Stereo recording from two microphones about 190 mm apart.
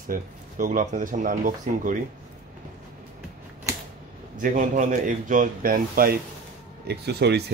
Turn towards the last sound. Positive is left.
turn(degrees=-60)  # may be behind; listen again after turning